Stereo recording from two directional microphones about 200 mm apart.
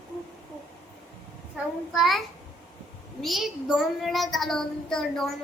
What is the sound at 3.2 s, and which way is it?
A child's voice, centre (ahead or behind).